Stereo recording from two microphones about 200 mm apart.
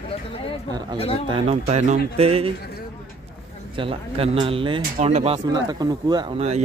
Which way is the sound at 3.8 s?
30° right (ahead or behind).